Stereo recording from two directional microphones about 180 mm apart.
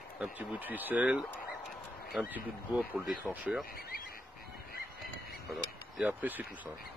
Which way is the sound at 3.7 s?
55° left (ahead or behind).